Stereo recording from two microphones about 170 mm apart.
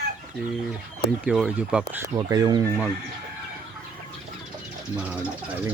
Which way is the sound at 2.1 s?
25° right (ahead or behind).